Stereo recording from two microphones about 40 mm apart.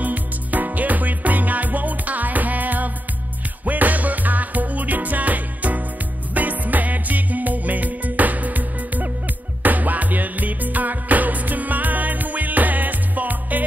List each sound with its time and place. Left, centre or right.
0.0 s music: right